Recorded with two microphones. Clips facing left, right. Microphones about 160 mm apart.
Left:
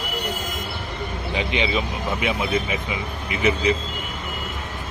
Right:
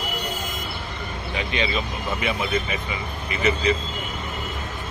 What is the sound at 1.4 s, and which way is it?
Speech, 20° left (ahead or behind).